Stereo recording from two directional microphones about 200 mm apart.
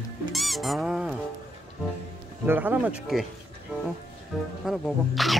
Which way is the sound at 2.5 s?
10° right (ahead or behind).